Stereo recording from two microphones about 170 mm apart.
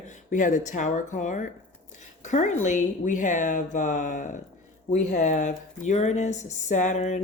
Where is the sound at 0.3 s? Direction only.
45° left (ahead or behind).